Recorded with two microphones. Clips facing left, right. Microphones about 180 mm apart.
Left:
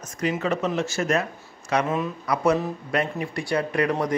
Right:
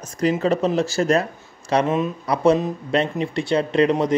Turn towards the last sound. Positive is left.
turn(degrees=-25)  # may be behind; listen again after turning